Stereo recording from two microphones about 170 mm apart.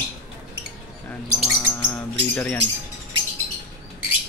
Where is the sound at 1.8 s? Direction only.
10° left (ahead or behind).